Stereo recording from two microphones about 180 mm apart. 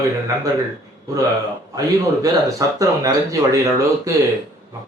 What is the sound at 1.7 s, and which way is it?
Speech, 20° right (ahead or behind).